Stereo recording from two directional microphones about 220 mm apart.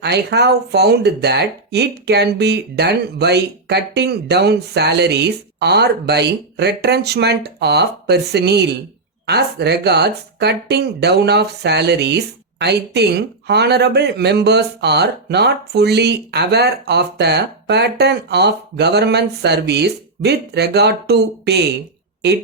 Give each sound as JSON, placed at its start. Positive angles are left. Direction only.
{"t": 0.0, "sound": "speech", "side_deg": -50}